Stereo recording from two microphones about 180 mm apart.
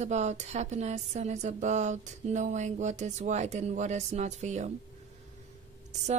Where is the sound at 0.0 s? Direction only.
40° right (ahead or behind).